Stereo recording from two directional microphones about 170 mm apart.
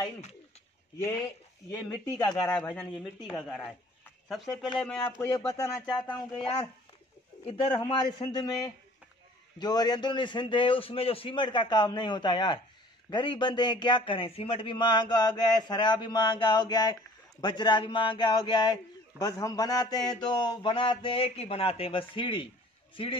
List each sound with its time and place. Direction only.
1.7 s a man's voice: 20° left (ahead or behind)
2.5 s speech: 5° left (ahead or behind)
7.4 s a man's voice: 35° left (ahead or behind)
9.6 s a man's voice: 25° left (ahead or behind)